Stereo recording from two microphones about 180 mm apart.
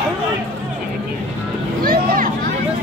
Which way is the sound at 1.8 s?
55° right (ahead or behind).